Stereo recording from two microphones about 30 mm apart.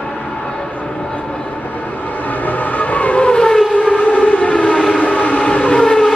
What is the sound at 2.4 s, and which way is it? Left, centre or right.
Train, left.